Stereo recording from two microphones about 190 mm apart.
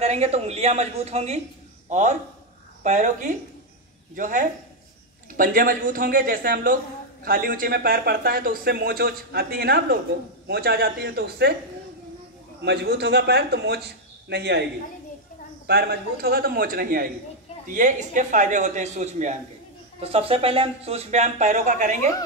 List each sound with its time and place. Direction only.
0.0 s a man's voice: 35° right (ahead or behind); by 11.5 s 55° right (ahead or behind)
12.6 s a man's voice: 60° right (ahead or behind)
15.6 s a man's voice: 60° right (ahead or behind); by 22.1 s 40° right (ahead or behind)